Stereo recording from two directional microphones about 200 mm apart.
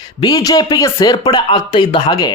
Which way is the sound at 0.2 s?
20° left (ahead or behind).